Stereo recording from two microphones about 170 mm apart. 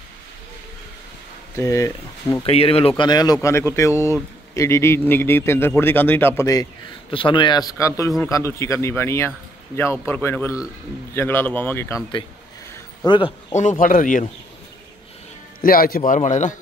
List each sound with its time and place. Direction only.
1.6 s speech: 20° left (ahead or behind)
2.4 s speech: 35° left (ahead or behind)
3.0 s speech: 25° left (ahead or behind)
7.1 s speech: 30° left (ahead or behind); by 12.0 s 10° left (ahead or behind)
12.7 s a sound: 25° left (ahead or behind)
13.6 s speech: 50° left (ahead or behind)
15.6 s a man's voice: 60° left (ahead or behind)
16.1 s speech: 45° left (ahead or behind)